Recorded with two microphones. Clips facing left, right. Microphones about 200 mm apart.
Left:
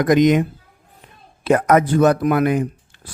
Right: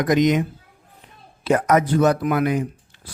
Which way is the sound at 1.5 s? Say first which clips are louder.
Left 3 dB; 55° left (ahead or behind).